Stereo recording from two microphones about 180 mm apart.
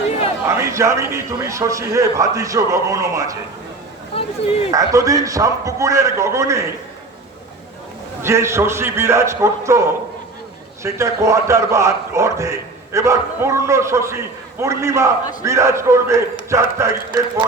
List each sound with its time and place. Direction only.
0.4 s a man's voice: 15° right (ahead or behind)
4.1 s a sound: 35° left (ahead or behind)
4.7 s a man's voice: 20° right (ahead or behind)
8.2 s a man's voice: 15° right (ahead or behind)